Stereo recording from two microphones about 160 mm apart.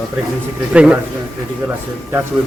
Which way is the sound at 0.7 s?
5° right (ahead or behind).